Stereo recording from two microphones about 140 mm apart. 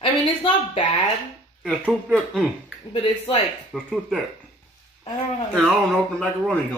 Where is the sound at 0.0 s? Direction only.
35° left (ahead or behind).